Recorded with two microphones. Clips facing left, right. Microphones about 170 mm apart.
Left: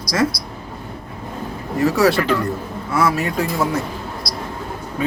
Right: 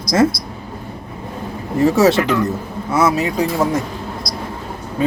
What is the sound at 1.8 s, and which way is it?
Speech, 25° right (ahead or behind).